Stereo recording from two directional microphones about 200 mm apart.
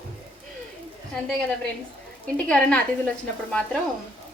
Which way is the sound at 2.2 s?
5° left (ahead or behind).